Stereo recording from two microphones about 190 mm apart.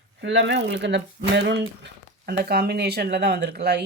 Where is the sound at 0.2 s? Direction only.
70° right (ahead or behind).